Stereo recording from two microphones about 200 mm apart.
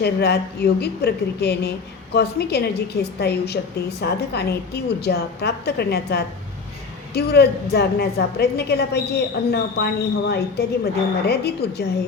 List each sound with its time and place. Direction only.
0.0 s a woman's voice: 55° left (ahead or behind)